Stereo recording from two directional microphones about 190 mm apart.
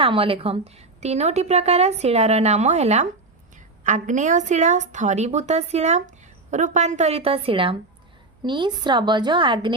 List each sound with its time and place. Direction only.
0.0 s a woman's voice: 30° right (ahead or behind)